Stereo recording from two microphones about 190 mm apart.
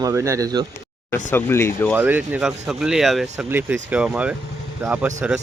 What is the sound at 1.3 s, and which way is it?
Speech, 15° left (ahead or behind).